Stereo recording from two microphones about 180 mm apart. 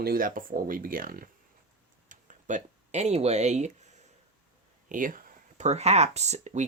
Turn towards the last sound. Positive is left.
turn(degrees=-40)  # may be behind; listen again after turning